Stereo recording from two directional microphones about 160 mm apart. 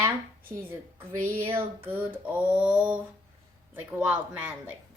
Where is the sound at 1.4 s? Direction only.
15° right (ahead or behind).